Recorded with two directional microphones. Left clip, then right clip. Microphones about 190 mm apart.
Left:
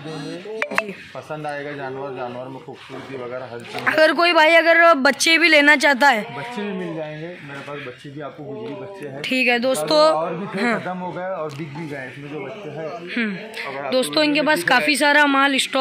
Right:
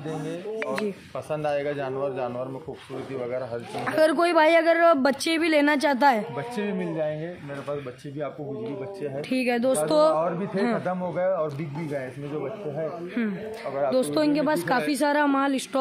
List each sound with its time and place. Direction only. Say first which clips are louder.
1.4 s a man's voice: right 2 dB; 35° right (ahead or behind)
3.8 s speech: left 6 dB; 5° right (ahead or behind)
6.5 s speech: left 1 dB; 20° right (ahead or behind)
9.2 s speech: left 7 dB; 5° right (ahead or behind)
10.9 s a man's voice: right 1 dB; 30° right (ahead or behind)
13.2 s speech: left 6 dB; centre (ahead or behind)